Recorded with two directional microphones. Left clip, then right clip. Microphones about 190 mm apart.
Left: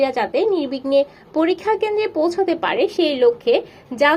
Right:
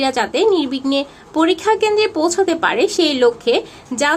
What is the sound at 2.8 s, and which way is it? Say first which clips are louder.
Speech: even; 55° right (ahead or behind).